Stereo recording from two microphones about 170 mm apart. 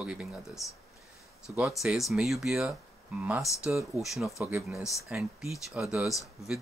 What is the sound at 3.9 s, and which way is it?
Speech, centre (ahead or behind).